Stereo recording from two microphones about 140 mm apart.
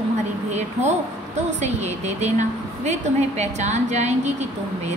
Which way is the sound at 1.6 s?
55° right (ahead or behind).